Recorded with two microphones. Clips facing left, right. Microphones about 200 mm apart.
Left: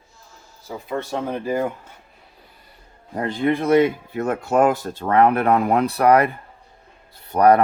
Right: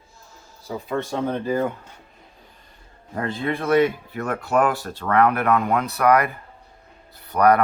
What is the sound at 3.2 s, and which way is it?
Speech, 20° left (ahead or behind).